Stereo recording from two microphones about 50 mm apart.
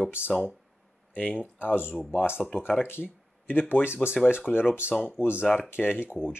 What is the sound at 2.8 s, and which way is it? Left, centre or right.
Speech, left.